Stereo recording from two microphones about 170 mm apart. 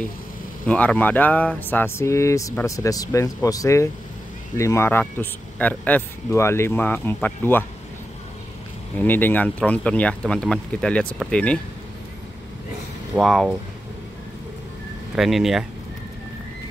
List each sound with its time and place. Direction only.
0.7 s speech: 10° left (ahead or behind)
9.0 s speech: 10° left (ahead or behind)
13.1 s speech: centre (ahead or behind)
15.1 s speech: centre (ahead or behind)